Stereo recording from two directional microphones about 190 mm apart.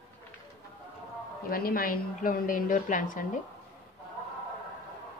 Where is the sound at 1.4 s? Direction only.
50° left (ahead or behind).